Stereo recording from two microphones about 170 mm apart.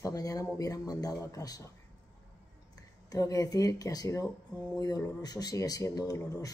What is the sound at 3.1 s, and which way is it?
Speech, 20° left (ahead or behind).